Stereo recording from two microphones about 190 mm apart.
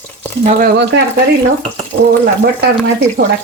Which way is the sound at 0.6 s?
65° right (ahead or behind).